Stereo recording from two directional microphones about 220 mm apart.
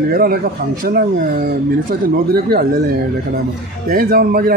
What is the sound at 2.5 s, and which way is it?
Speech, 45° right (ahead or behind).